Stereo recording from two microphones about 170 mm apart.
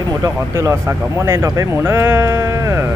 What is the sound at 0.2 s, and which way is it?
Speech, 15° right (ahead or behind).